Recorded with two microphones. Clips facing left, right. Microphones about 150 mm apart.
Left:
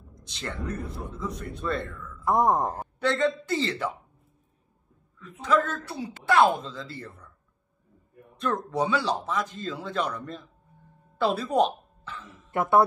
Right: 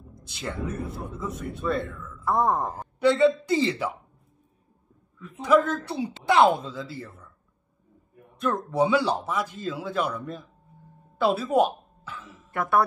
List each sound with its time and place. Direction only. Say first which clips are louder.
0.3 s a man's voice: right 2 dB; 5° right (ahead or behind)
2.2 s speech: left 1 dB; 20° left (ahead or behind)
3.0 s a man's voice: right 6 dB; 10° right (ahead or behind)
5.4 s a man's voice: right 4 dB; 10° right (ahead or behind)
8.4 s a man's voice: right 3 dB; 5° right (ahead or behind)
11.1 s music: right 2 dB; 5° right (ahead or behind)
12.5 s speech: left 2 dB; 25° left (ahead or behind)